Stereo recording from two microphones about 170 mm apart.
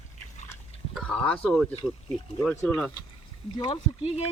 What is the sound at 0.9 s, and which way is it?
Speech, 5° left (ahead or behind).